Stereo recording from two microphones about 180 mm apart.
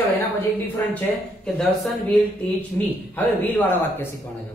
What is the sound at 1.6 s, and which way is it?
Speech, 5° left (ahead or behind).